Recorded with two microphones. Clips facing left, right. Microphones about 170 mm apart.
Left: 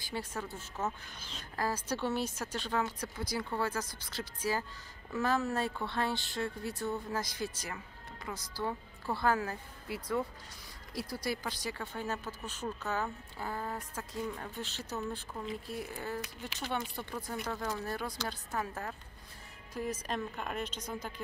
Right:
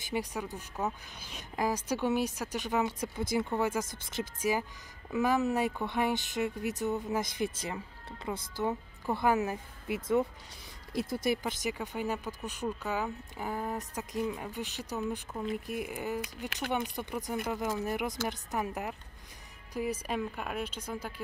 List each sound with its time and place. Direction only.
0.1 s a woman's voice: 15° right (ahead or behind)